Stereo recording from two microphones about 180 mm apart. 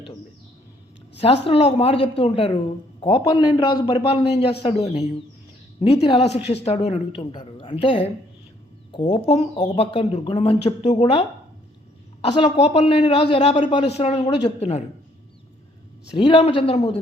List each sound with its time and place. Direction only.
1.5 s speech: 35° left (ahead or behind)
9.0 s speech: 35° left (ahead or behind)
12.3 s speech: 30° left (ahead or behind)
16.1 s speech: 30° left (ahead or behind)